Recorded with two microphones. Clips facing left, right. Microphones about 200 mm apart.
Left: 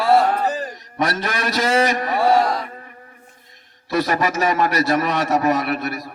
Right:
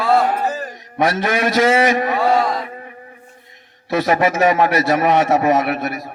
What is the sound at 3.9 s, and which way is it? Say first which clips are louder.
A man's voice: right 3 dB; 60° right (ahead or behind).